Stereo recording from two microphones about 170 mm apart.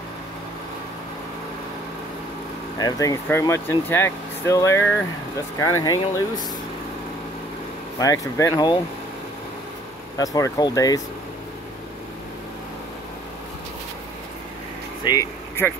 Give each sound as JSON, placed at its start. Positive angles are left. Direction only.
{"t": 2.8, "sound": "speech", "side_deg": 20}
{"t": 8.0, "sound": "speech", "side_deg": 20}
{"t": 10.1, "sound": "speech", "side_deg": 20}
{"t": 15.0, "sound": "speech", "side_deg": 15}